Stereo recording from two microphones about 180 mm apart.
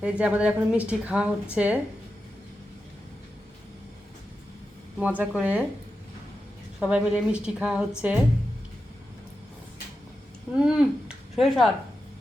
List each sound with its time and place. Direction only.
0.0 s a woman's voice: 5° right (ahead or behind)
4.9 s a woman's voice: 5° right (ahead or behind)
6.7 s a woman's voice: 5° right (ahead or behind)
10.5 s speech: 5° right (ahead or behind)